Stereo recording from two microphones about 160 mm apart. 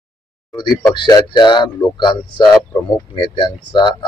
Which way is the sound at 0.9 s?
30° left (ahead or behind).